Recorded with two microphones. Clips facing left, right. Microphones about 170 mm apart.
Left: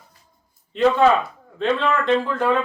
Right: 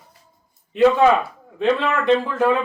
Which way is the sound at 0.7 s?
10° right (ahead or behind).